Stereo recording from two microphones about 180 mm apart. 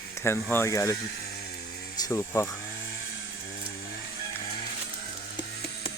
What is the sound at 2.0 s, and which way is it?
Speech, 15° left (ahead or behind).